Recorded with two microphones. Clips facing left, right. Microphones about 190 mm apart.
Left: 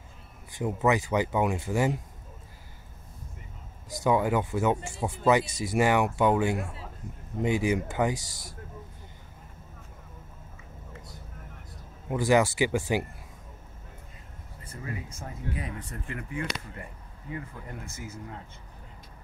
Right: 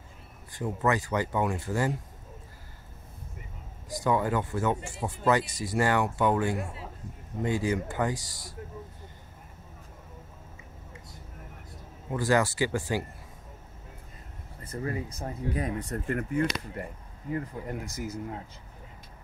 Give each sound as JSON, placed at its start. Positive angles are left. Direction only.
{"t": 0.6, "sound": "speech", "side_deg": 15}
{"t": 4.0, "sound": "speech", "side_deg": 10}
{"t": 12.1, "sound": "speech", "side_deg": 15}
{"t": 14.6, "sound": "speech", "side_deg": -40}